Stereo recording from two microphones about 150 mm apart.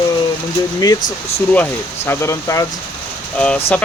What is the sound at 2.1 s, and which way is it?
Speech, 20° left (ahead or behind).